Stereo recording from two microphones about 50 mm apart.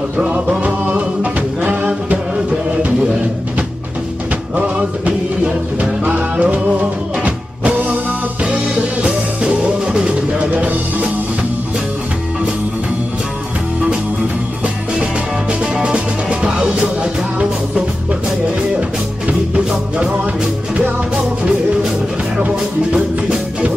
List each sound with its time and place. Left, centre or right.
0.2 s music: right
4.6 s music: right
8.5 s music: right
15.6 s music: centre
19.2 s music: right
22.9 s music: centre